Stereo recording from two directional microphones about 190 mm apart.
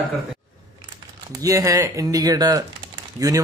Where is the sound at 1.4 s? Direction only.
15° right (ahead or behind).